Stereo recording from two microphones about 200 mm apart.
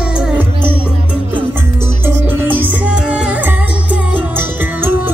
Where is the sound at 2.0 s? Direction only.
10° right (ahead or behind).